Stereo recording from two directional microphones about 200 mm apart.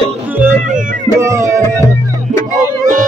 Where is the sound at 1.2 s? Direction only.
15° right (ahead or behind).